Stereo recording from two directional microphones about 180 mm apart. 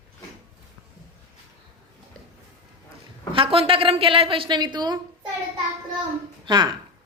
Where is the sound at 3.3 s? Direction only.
30° right (ahead or behind).